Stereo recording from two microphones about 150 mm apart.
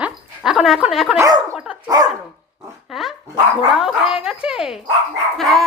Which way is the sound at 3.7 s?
5° right (ahead or behind).